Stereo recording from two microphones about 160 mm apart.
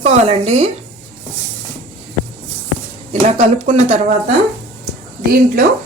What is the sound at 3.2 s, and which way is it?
Speech, 45° right (ahead or behind).